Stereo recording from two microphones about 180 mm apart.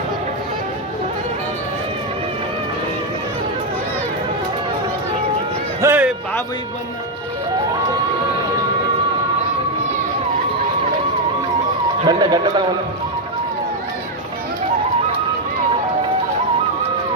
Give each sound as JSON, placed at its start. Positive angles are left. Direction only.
{"t": 5.8, "sound": "music", "side_deg": -10}
{"t": 12.0, "sound": "speech", "side_deg": -25}